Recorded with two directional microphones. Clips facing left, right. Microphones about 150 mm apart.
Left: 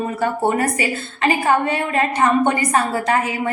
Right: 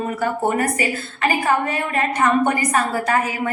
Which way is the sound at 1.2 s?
30° left (ahead or behind).